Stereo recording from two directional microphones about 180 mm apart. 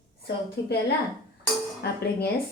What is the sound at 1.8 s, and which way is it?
Speech, 65° left (ahead or behind).